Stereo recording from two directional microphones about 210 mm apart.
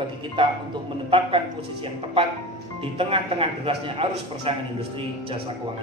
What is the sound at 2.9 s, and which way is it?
A man's voice, 25° right (ahead or behind).